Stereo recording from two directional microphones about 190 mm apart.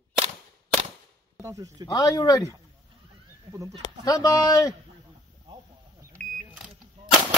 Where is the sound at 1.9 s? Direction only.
20° left (ahead or behind).